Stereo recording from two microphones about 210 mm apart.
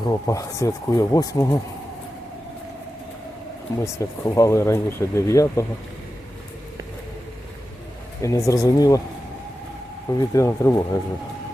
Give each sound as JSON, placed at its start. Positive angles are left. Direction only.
{"t": 0.0, "sound": "speech", "side_deg": 15}
{"t": 3.9, "sound": "speech", "side_deg": 15}
{"t": 8.2, "sound": "speech", "side_deg": 15}
{"t": 10.2, "sound": "speech", "side_deg": 15}